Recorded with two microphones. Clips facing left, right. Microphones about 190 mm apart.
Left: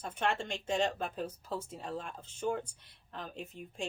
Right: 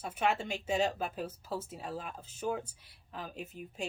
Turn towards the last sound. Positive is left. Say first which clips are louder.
# right 1 dB
turn(degrees=-5)  # may be behind; listen again after turning